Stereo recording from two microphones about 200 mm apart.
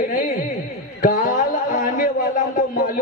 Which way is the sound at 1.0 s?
45° left (ahead or behind).